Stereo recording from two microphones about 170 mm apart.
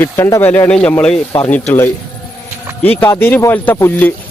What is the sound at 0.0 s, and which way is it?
Speech, 15° left (ahead or behind).